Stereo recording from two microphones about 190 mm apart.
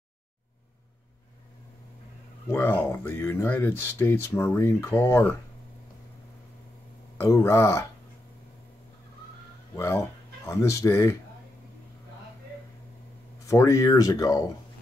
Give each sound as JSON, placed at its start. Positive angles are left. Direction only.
{"t": 2.5, "sound": "speech", "side_deg": 10}
{"t": 7.2, "sound": "speech", "side_deg": 15}
{"t": 9.8, "sound": "speech", "side_deg": 15}
{"t": 13.5, "sound": "speech", "side_deg": 15}